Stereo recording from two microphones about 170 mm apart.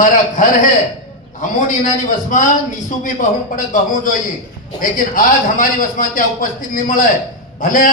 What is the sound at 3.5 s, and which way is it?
A man's voice, 50° left (ahead or behind).